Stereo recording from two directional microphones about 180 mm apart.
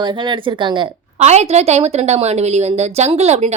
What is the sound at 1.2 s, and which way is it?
A woman's voice, 40° right (ahead or behind).